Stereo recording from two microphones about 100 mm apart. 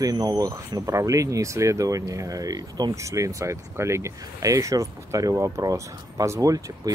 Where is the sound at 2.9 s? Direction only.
30° right (ahead or behind).